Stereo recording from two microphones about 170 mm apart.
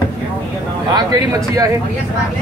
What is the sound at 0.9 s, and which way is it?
Speech, 20° right (ahead or behind).